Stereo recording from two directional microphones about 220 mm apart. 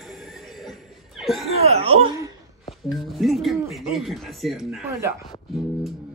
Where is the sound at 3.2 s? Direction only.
Centre (ahead or behind).